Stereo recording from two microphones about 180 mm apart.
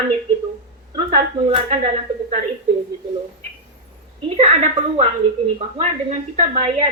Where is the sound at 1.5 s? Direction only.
35° right (ahead or behind).